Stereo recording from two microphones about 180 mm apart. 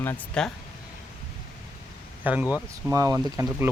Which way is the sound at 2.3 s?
10° right (ahead or behind).